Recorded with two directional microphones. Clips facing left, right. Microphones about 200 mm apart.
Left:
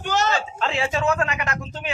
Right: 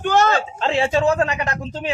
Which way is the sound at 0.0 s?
55° right (ahead or behind).